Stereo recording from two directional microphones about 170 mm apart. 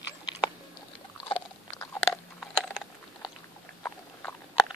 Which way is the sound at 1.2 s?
30° left (ahead or behind).